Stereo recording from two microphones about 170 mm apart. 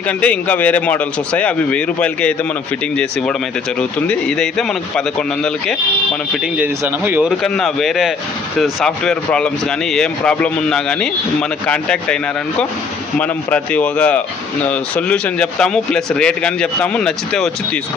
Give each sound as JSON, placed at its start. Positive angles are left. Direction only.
{"t": 0.1, "sound": "speech", "side_deg": 10}
{"t": 6.3, "sound": "speech", "side_deg": -5}
{"t": 7.4, "sound": "speech", "side_deg": 5}